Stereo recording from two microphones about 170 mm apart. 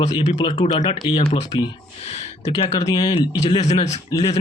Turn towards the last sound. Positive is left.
turn(degrees=20)  # may be behind; listen again after turning